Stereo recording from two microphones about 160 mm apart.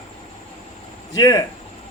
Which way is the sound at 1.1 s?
20° left (ahead or behind).